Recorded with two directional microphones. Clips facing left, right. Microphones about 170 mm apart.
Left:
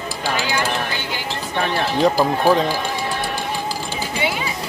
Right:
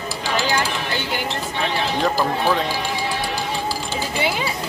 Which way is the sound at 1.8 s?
45° left (ahead or behind).